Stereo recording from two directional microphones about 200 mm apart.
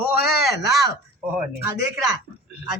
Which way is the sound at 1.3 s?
10° right (ahead or behind).